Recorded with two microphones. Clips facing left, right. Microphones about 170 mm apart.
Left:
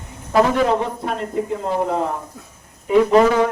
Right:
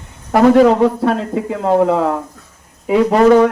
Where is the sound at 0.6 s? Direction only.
80° right.